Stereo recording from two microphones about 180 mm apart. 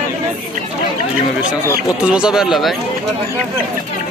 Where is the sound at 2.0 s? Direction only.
5° right (ahead or behind).